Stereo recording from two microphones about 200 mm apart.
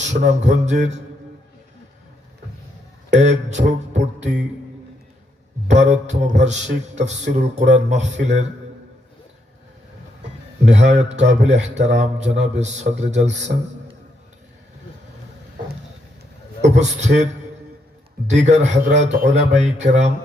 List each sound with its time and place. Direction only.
0.0 s a man's voice: 35° right (ahead or behind)
3.1 s speech: 35° right (ahead or behind)
5.6 s a man's voice: 35° right (ahead or behind)
10.7 s a man's voice: 35° right (ahead or behind)
16.6 s a man's voice: 35° right (ahead or behind)
18.3 s a man's voice: 35° right (ahead or behind)